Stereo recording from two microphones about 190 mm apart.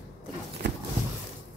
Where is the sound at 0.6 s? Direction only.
65° right (ahead or behind).